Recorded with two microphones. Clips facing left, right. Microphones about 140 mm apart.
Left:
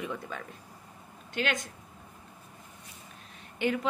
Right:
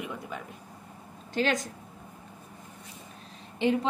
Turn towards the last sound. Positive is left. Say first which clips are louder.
# right 3 dB
turn(degrees=-30)  # may be behind; listen again after turning